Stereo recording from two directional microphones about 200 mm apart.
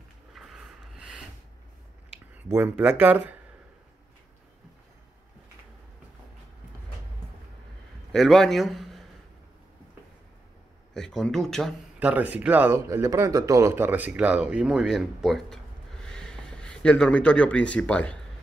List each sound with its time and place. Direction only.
0.3 s a sound: centre (ahead or behind)
2.3 s speech: 10° right (ahead or behind)
8.1 s a man's voice: centre (ahead or behind)
11.0 s speech: 5° left (ahead or behind)